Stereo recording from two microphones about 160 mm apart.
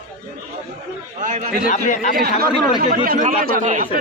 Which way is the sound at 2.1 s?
70° right (ahead or behind).